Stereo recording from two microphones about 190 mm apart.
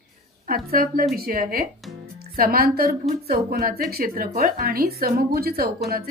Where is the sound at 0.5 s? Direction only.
50° right (ahead or behind).